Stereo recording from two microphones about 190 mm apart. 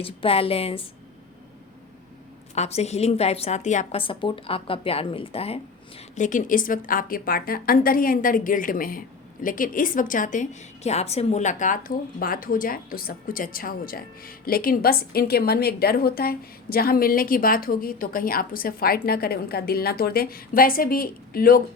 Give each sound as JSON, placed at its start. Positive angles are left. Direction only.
{"t": 0.0, "sound": "a woman's voice", "side_deg": 30}
{"t": 2.6, "sound": "a woman's voice", "side_deg": 35}
{"t": 6.1, "sound": "a woman's voice", "side_deg": 40}